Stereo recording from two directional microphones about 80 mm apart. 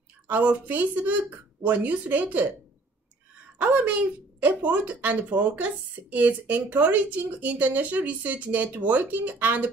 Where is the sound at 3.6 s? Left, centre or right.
Centre.